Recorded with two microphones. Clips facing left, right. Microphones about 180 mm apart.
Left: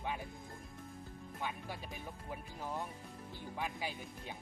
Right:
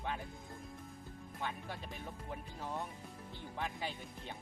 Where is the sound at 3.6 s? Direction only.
5° left (ahead or behind).